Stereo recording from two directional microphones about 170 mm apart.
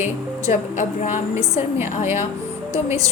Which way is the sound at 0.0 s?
45° left (ahead or behind).